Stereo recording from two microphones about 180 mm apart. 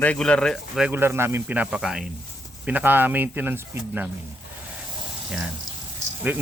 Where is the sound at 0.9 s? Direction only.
10° right (ahead or behind).